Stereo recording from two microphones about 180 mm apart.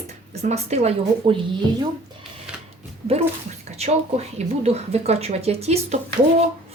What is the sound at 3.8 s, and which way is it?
A woman's voice, 35° right (ahead or behind).